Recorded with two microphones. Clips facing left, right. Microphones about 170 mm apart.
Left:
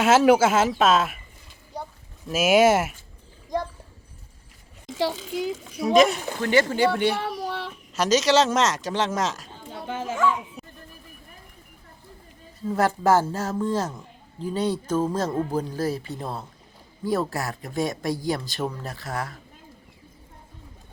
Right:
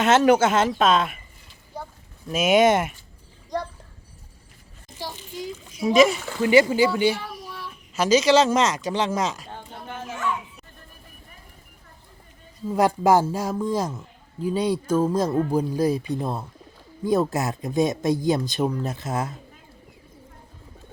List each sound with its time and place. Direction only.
0.0 s speech: 5° left (ahead or behind)
2.2 s speech: 5° left (ahead or behind)
4.9 s a child's voice: 85° left
5.8 s speech: centre (ahead or behind)
7.2 s a sound: 70° left (ahead or behind)
7.9 s speech: centre (ahead or behind)
9.7 s dog: 90° left
12.6 s speech: 15° right (ahead or behind)